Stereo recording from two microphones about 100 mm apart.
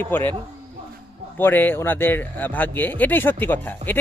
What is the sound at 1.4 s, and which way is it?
Speech, 20° left (ahead or behind).